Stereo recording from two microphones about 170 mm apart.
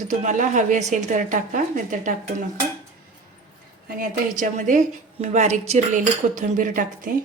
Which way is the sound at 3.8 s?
55° right (ahead or behind).